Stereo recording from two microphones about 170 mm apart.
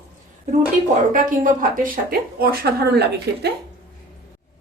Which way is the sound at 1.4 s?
55° right (ahead or behind).